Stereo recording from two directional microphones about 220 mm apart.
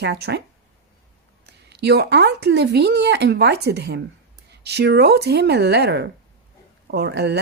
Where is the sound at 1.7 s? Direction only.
50° right (ahead or behind).